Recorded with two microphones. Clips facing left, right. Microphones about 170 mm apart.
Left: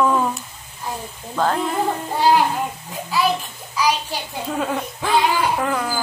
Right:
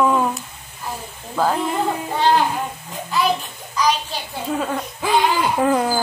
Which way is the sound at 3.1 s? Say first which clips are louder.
Even; 5° left (ahead or behind).